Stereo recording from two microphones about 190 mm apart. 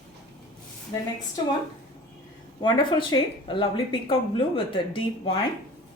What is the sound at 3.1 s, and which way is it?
A woman's voice, 25° left (ahead or behind).